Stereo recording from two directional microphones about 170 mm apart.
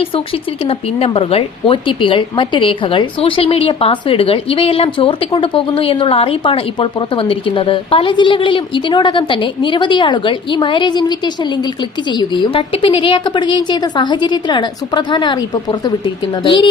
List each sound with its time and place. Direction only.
0.6 s speech: 35° left (ahead or behind)
12.1 s a woman's voice: 25° left (ahead or behind)